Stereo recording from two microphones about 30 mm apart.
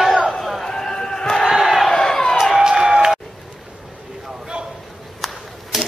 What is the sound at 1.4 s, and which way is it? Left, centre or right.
Battle cry, centre.